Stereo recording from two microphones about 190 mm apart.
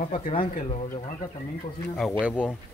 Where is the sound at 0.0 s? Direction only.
45° left (ahead or behind).